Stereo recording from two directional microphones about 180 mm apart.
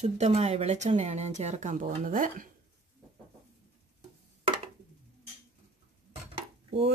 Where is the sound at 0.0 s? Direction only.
35° right (ahead or behind).